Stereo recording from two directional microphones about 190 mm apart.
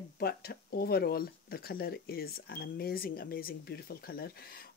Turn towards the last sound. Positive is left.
turn(degrees=55)  # may be behind; listen again after turning